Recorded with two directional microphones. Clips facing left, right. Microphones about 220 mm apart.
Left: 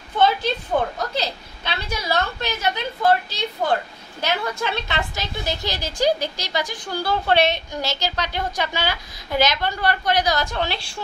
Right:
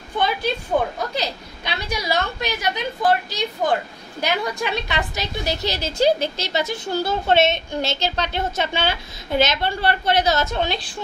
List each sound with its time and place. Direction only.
1.1 s a woman's voice: 15° right (ahead or behind)